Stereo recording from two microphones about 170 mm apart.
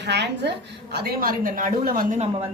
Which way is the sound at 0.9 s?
65° right (ahead or behind).